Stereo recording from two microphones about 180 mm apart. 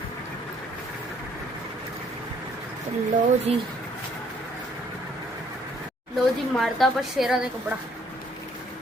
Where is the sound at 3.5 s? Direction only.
35° right (ahead or behind).